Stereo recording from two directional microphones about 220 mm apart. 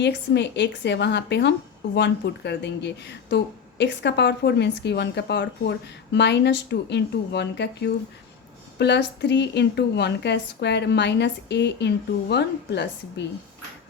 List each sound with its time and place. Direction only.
0.0 s a woman's voice: 50° left (ahead or behind)